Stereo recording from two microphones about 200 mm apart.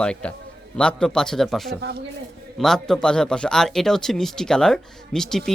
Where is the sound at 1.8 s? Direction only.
50° right (ahead or behind).